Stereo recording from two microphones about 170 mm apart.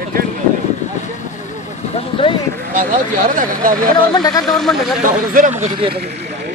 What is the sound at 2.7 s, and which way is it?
Speech, 50° right (ahead or behind).